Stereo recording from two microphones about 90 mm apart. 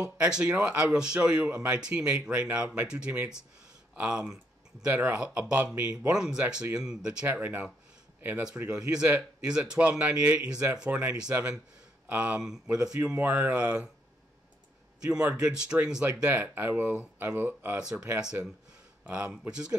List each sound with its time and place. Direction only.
0.2 s speech: 10° right (ahead or behind)
7.2 s speech: 20° right (ahead or behind)
15.0 s speech: 15° right (ahead or behind)